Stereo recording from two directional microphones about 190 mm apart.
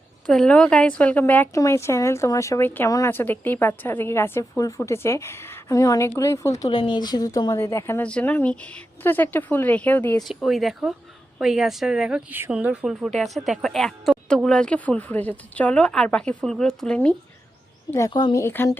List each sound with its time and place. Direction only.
0.3 s a woman's voice: 5° left (ahead or behind)
6.7 s a woman's voice: 25° left (ahead or behind)
10.2 s speech: centre (ahead or behind)
17.9 s a woman's voice: 20° left (ahead or behind)